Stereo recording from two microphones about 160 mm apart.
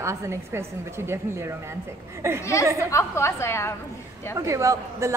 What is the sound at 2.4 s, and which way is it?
A woman's voice, 20° left (ahead or behind).